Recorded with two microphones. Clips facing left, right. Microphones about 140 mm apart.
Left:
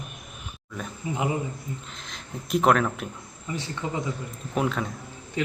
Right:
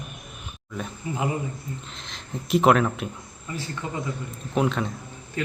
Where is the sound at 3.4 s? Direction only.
20° left (ahead or behind).